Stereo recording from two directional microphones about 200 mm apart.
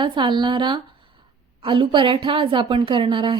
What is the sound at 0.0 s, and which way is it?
A woman's voice, 25° right (ahead or behind).